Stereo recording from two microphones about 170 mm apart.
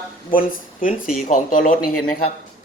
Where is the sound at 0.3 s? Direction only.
55° left (ahead or behind).